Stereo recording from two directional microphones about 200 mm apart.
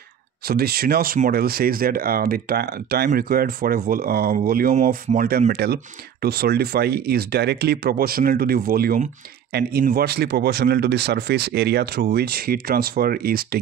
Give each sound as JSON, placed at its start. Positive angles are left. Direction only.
{"t": 0.5, "sound": "speech", "side_deg": -50}